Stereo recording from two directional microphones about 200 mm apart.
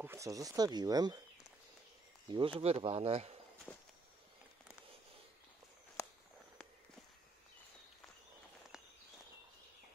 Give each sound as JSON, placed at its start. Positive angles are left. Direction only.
{"t": 0.0, "sound": "speech", "side_deg": -15}
{"t": 2.2, "sound": "speech", "side_deg": -25}